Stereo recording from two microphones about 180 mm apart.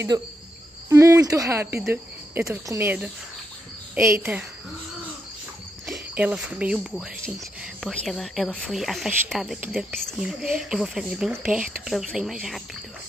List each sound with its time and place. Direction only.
0.1 s insect: 20° right (ahead or behind)
0.8 s speech: 15° right (ahead or behind)
5.9 s speech: 5° right (ahead or behind)